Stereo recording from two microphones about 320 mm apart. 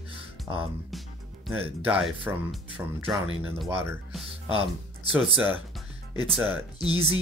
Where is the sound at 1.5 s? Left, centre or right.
Centre.